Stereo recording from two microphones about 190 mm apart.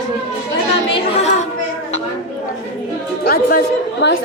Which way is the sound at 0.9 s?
30° left (ahead or behind).